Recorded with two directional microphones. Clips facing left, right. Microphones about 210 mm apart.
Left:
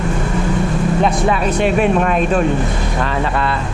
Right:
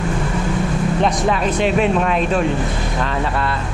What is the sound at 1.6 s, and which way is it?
Speech, 50° left (ahead or behind).